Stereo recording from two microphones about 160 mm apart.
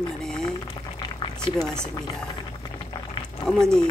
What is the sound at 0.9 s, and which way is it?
Boiling, 30° left (ahead or behind).